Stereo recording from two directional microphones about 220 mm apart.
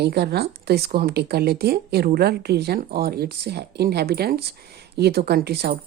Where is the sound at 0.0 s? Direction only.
45° right (ahead or behind).